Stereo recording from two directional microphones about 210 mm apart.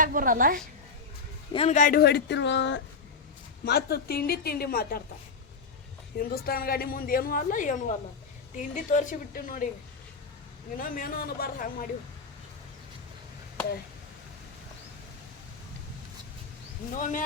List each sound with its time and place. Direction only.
0.0 s a woman's voice: 40° right (ahead or behind)
1.5 s a woman's voice: 35° left (ahead or behind)
6.1 s a woman's voice: 45° left (ahead or behind)
10.8 s a woman's voice: 40° left (ahead or behind)
16.9 s a woman's voice: 40° left (ahead or behind)